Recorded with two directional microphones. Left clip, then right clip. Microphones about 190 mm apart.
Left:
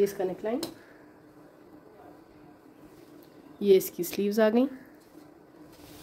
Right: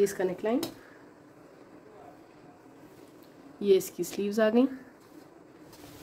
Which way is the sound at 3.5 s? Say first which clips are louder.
Left 2 dB; 15° left (ahead or behind).